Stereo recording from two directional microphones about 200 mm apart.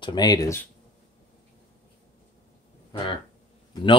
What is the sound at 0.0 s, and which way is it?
Speech, 20° left (ahead or behind).